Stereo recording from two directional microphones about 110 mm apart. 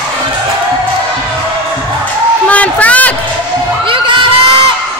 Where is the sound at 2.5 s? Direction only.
15° left (ahead or behind).